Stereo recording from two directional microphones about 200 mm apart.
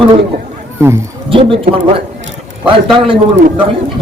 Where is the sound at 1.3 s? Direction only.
25° right (ahead or behind).